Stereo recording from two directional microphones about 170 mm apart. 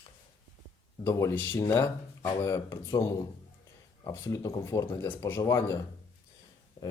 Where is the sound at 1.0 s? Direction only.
15° left (ahead or behind).